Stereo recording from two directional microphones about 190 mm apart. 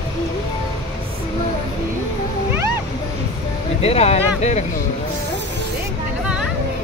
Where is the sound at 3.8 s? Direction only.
35° left (ahead or behind).